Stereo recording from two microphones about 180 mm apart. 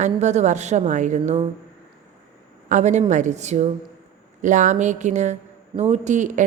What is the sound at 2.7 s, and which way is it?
A woman's voice, 40° right (ahead or behind).